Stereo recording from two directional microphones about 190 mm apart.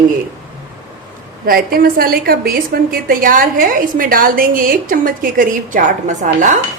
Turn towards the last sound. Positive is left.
turn(degrees=-40)  # may be behind; listen again after turning